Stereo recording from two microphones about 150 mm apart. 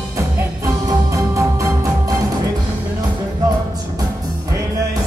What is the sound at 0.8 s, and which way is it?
Music, 20° right (ahead or behind).